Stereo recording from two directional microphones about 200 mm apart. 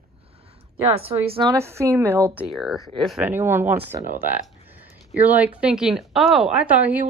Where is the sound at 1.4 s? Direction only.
15° right (ahead or behind).